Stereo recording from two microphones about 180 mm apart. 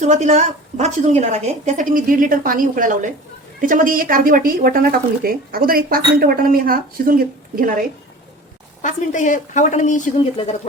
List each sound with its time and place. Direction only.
0.0 s speech: 40° right (ahead or behind)
8.8 s a woman's voice: 45° left (ahead or behind)